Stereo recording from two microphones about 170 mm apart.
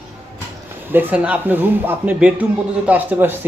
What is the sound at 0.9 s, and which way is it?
Speech, 10° right (ahead or behind).